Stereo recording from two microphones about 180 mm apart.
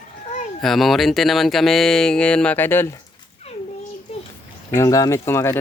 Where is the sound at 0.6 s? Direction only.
Centre (ahead or behind).